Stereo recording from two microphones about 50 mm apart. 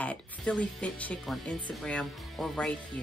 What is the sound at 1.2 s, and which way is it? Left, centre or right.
Speech, centre.